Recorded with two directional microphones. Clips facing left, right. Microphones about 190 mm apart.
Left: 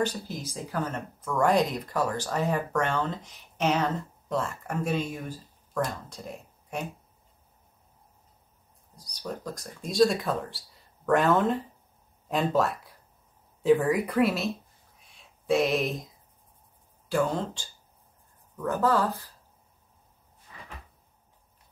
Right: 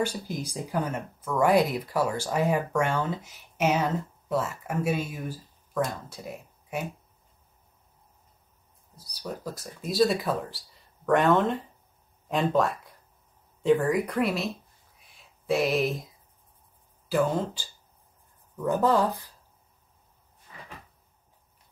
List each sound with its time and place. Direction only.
0.0 s speech: 10° right (ahead or behind)
8.9 s speech: 5° right (ahead or behind)
17.1 s speech: 5° right (ahead or behind)
18.6 s speech: 15° right (ahead or behind)